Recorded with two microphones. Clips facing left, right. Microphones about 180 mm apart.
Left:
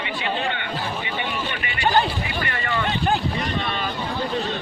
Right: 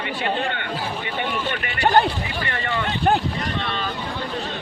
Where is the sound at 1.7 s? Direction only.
60° right (ahead or behind).